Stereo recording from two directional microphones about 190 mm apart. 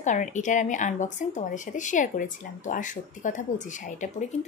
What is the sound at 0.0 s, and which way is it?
Speech, 40° left (ahead or behind).